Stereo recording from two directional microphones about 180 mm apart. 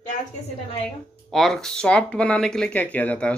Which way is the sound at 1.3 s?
Centre (ahead or behind).